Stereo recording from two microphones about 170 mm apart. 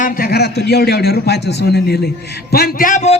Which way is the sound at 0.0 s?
55° left (ahead or behind).